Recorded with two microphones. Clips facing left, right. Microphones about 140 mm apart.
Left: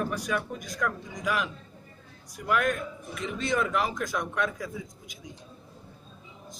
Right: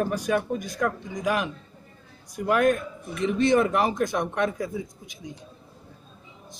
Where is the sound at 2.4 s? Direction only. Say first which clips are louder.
Right 6 dB; 35° right (ahead or behind).